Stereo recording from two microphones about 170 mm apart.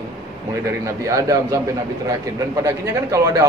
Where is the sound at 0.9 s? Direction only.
20° right (ahead or behind).